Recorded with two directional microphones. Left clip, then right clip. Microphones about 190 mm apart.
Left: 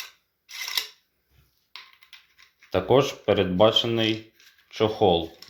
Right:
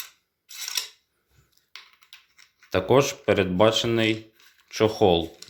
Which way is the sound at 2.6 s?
20° right (ahead or behind).